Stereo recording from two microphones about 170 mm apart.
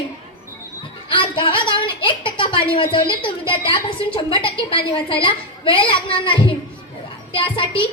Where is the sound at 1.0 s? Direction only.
30° left (ahead or behind).